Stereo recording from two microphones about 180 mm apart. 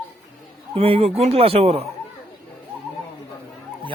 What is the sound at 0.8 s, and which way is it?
Speech, 35° right (ahead or behind).